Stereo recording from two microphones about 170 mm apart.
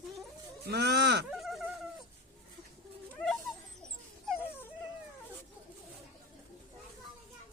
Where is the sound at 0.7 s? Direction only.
75° right (ahead or behind).